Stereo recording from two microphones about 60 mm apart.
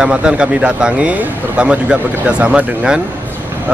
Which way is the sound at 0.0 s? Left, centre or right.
Centre.